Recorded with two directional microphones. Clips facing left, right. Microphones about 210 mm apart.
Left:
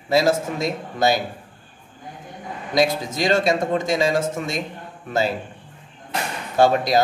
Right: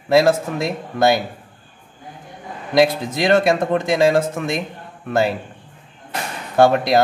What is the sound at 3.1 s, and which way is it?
Speech, 60° right (ahead or behind).